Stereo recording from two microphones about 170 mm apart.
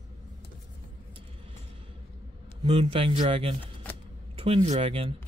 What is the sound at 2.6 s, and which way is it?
A man's voice, 35° right (ahead or behind).